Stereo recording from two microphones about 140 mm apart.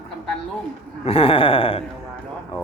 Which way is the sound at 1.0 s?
40° left (ahead or behind).